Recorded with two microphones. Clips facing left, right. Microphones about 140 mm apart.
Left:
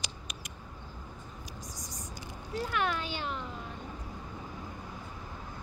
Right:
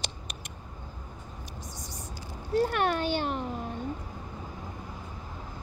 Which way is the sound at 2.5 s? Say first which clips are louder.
Right 6 dB; 50° right (ahead or behind).